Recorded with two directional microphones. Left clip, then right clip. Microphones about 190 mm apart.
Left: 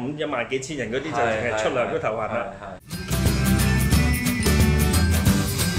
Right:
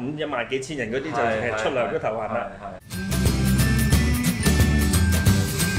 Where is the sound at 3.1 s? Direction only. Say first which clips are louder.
Left 1 dB; centre (ahead or behind).